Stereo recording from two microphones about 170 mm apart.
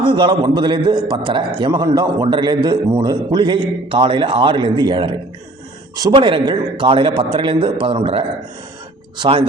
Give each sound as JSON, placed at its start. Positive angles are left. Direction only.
{"t": 0.0, "sound": "a man's voice", "side_deg": -30}